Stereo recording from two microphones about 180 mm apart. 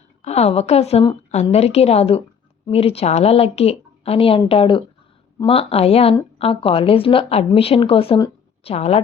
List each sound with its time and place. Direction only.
0.2 s a woman's voice: 35° left (ahead or behind)